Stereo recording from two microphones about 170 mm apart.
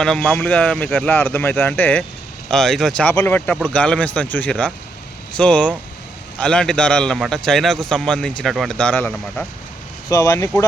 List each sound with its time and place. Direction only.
0.0 s a man's voice: 5° left (ahead or behind)